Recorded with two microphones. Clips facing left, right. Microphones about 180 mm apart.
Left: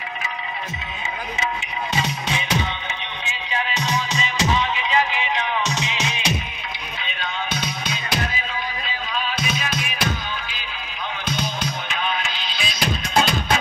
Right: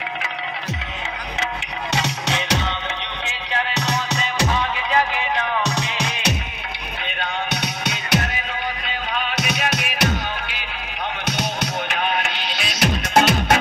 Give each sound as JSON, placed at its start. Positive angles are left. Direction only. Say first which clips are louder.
{"t": 2.0, "sound": "music", "louder": "right 2 dB", "side_deg": -75}
{"t": 11.2, "sound": "music", "louder": "even", "side_deg": -75}